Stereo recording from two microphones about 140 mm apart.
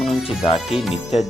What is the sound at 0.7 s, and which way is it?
Speech, centre (ahead or behind).